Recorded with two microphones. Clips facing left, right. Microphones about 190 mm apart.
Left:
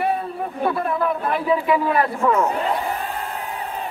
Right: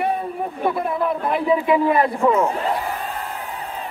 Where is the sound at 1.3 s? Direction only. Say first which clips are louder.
Right 2 dB; 20° right (ahead or behind).